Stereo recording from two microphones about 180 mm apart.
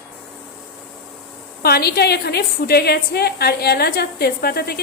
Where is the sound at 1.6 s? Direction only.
60° left (ahead or behind).